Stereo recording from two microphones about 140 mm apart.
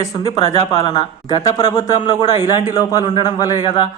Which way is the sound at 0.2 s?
40° left (ahead or behind).